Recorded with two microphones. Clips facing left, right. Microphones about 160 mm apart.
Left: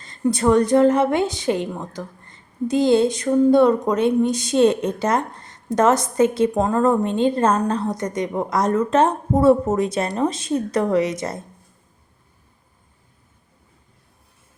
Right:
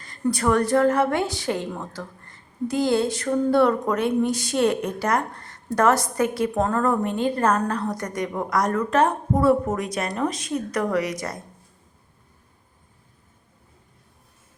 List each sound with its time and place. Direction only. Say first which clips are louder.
0.0 s a woman's voice: left 4 dB; 20° left (ahead or behind)